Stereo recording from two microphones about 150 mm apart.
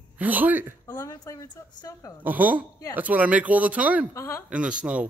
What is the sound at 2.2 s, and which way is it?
Speech, 10° right (ahead or behind).